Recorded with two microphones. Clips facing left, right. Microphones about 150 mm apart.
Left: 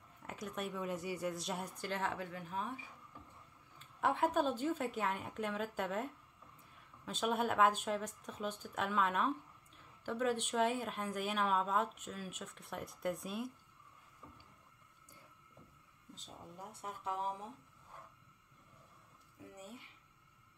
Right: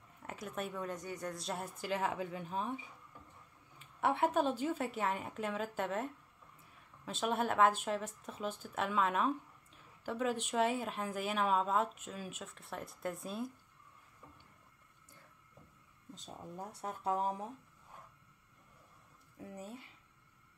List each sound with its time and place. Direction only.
0.3 s speech: centre (ahead or behind); by 2.9 s 20° right (ahead or behind)
3.8 s speech: 5° right (ahead or behind)
7.1 s speech: centre (ahead or behind)
16.5 s speech: 35° right (ahead or behind)